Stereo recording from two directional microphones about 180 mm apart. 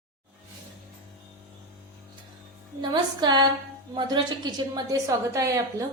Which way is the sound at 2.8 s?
25° right (ahead or behind).